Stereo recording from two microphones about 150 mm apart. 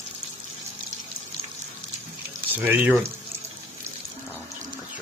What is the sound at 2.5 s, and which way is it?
Speech, 10° right (ahead or behind).